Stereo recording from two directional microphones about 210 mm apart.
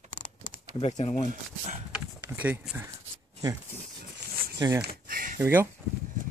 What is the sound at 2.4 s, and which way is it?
Speech, 5° right (ahead or behind).